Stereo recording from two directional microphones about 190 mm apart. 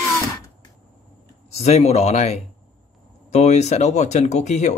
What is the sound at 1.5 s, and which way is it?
Speech, 35° left (ahead or behind).